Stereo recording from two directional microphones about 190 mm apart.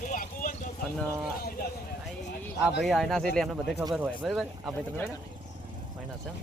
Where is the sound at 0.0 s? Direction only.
45° left (ahead or behind).